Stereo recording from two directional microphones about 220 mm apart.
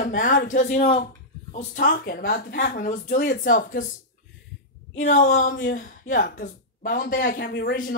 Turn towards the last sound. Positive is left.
turn(degrees=40)  # may be behind; listen again after turning